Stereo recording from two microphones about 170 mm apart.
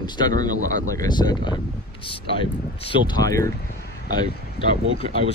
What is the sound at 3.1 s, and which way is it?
Speech, 20° left (ahead or behind).